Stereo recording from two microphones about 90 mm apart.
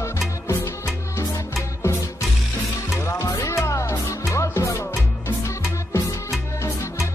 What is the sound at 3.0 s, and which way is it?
Music, 35° left (ahead or behind).